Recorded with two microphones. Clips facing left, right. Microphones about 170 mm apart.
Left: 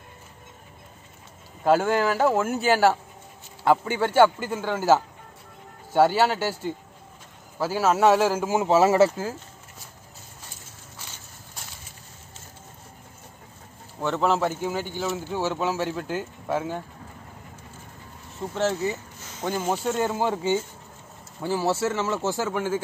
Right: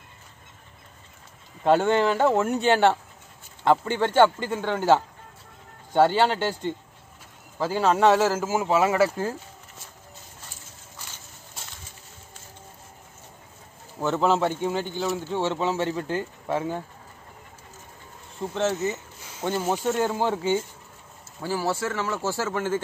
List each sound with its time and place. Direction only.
1.6 s speech: centre (ahead or behind); by 9.1 s 25° left (ahead or behind)
13.9 s speech: 5° right (ahead or behind)
18.4 s speech: 10° left (ahead or behind)
19.2 s speech: 5° right (ahead or behind)
21.7 s speech: 25° left (ahead or behind)